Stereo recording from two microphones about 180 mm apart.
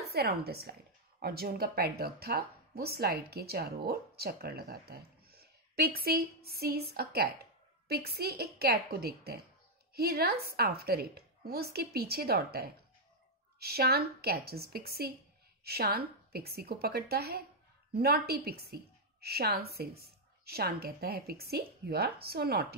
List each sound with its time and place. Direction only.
0.0 s speech: 60° right (ahead or behind)